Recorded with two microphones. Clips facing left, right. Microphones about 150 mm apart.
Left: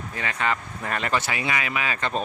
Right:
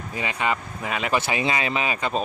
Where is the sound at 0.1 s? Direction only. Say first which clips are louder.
Right 1 dB; 15° right (ahead or behind).